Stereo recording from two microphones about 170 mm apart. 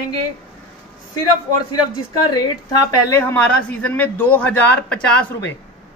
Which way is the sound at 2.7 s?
15° left (ahead or behind).